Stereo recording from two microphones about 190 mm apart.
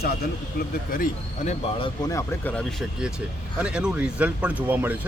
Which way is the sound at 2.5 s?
Centre (ahead or behind).